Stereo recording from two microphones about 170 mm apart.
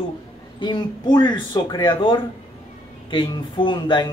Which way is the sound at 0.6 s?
25° left (ahead or behind).